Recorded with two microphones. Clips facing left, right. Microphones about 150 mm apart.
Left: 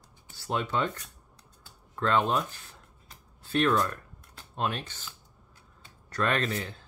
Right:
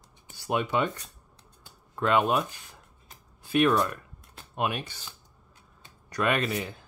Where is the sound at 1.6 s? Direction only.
15° right (ahead or behind).